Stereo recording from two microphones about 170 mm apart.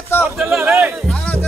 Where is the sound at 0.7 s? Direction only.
Centre (ahead or behind).